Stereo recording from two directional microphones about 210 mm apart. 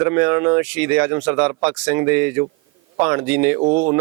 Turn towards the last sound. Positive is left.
turn(degrees=-35)  # may be behind; listen again after turning